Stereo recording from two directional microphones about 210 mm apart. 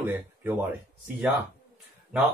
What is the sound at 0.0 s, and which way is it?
Speech, 10° right (ahead or behind).